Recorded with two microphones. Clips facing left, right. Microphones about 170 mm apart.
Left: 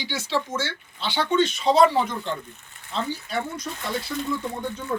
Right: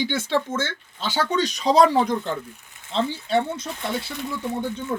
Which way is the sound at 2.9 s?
25° right (ahead or behind).